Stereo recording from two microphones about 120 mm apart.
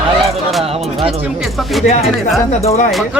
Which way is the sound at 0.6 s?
55° right (ahead or behind).